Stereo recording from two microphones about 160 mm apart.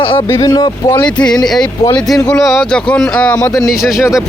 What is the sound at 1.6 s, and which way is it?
Speech, 25° left (ahead or behind).